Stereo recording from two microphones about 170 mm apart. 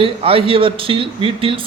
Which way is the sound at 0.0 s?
35° right (ahead or behind).